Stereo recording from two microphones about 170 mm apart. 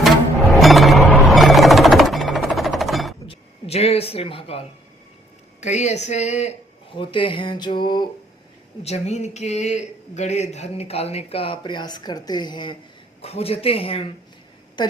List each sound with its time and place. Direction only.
0.6 s music: centre (ahead or behind)
3.2 s a sound: 35° left (ahead or behind)
5.5 s speech: 40° left (ahead or behind)
6.9 s speech: 30° left (ahead or behind)
8.8 s speech: 40° left (ahead or behind)
13.2 s a woman's voice: 35° left (ahead or behind)